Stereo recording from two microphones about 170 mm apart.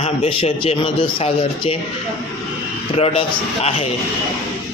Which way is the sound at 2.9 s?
35° left (ahead or behind).